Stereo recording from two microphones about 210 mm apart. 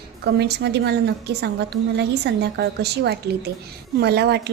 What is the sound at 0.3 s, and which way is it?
A woman's voice, 55° right (ahead or behind).